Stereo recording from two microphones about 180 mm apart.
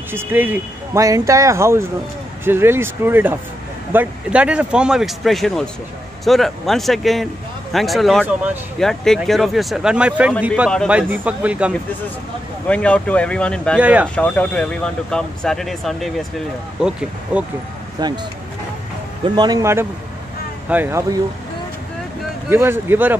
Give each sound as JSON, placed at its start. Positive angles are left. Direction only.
{"t": 0.1, "sound": "speech", "side_deg": -10}
{"t": 12.6, "sound": "speech", "side_deg": 5}
{"t": 13.7, "sound": "speech", "side_deg": -10}
{"t": 14.1, "sound": "speech", "side_deg": 10}
{"t": 17.9, "sound": "speech", "side_deg": -25}
{"t": 19.2, "sound": "speech", "side_deg": -25}
{"t": 22.5, "sound": "speech", "side_deg": -10}